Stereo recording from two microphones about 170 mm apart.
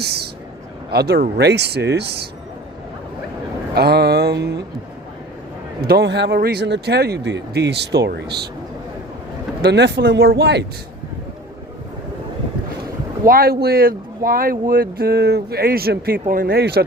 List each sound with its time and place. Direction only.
0.0 s a sound: 70° right (ahead or behind)
0.9 s speech: 70° right (ahead or behind)
3.8 s speech: 70° right (ahead or behind)
5.9 s speech: 85° right
9.6 s speech: 80° right
13.2 s speech: 60° right (ahead or behind)